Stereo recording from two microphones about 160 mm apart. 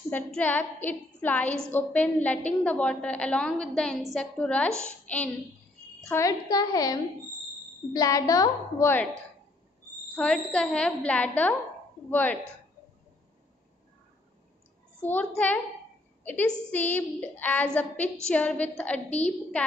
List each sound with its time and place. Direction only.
0.1 s a woman's voice: 10° left (ahead or behind)
6.1 s a woman's voice: 20° left (ahead or behind)
10.1 s a woman's voice: 5° left (ahead or behind)
15.0 s a woman's voice: 10° left (ahead or behind)
19.0 s a woman's voice: 45° left (ahead or behind)
19.6 s a woman's voice: 10° left (ahead or behind)